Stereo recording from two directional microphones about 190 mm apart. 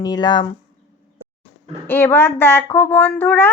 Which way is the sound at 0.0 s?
20° left (ahead or behind).